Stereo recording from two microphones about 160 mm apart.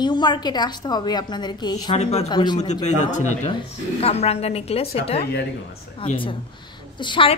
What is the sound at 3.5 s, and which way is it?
A woman's voice, 40° left (ahead or behind).